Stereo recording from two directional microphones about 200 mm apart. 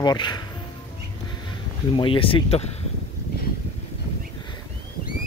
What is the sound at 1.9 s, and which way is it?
Speech, 25° left (ahead or behind).